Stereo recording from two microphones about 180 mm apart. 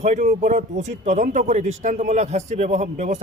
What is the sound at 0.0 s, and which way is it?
A man's voice, 40° right (ahead or behind).